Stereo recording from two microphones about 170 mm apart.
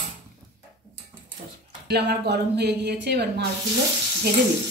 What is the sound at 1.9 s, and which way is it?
Speech, 75° right (ahead or behind).